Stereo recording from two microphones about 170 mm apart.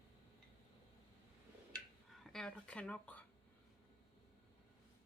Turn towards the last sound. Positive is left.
turn(degrees=5)  # may be behind; listen again after turning